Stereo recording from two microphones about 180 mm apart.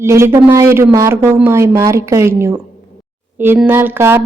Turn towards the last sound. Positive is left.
turn(degrees=-15)  # may be behind; listen again after turning